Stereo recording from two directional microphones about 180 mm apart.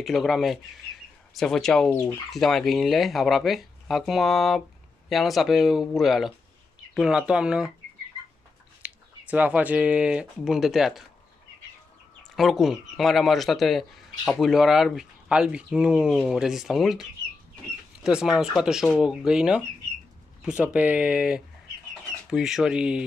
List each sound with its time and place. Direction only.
0.0 s speech: centre (ahead or behind)
8.8 s speech: 10° right (ahead or behind)
12.4 s speech: centre (ahead or behind)
18.0 s speech: 5° right (ahead or behind)